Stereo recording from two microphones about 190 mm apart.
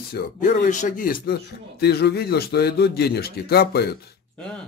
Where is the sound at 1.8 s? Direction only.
60° left (ahead or behind).